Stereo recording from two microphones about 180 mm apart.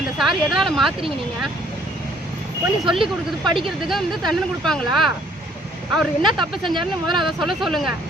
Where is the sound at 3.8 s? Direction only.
Centre (ahead or behind).